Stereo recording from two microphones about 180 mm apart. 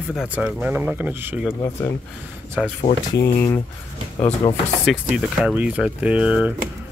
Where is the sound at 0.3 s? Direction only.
5° right (ahead or behind).